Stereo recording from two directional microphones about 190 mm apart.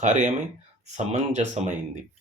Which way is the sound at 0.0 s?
40° right (ahead or behind).